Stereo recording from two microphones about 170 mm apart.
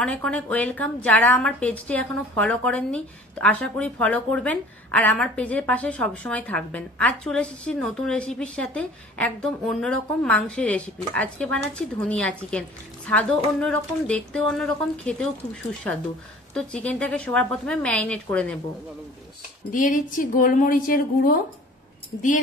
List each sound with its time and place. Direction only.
0.0 s a woman's voice: 5° left (ahead or behind)
19.7 s a woman's voice: 50° left (ahead or behind)